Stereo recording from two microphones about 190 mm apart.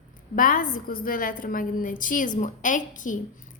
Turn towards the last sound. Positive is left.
turn(degrees=40)  # may be behind; listen again after turning